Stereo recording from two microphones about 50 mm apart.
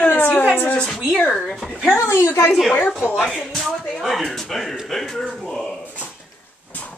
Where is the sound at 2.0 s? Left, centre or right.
Left.